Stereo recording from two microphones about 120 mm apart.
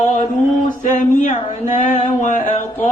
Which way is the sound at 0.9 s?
90° left.